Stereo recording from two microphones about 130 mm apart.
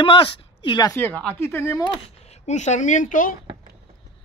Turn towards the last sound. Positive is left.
turn(degrees=80)